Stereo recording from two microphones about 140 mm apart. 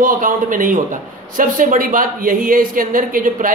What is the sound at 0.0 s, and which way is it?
Speech, 75° right (ahead or behind).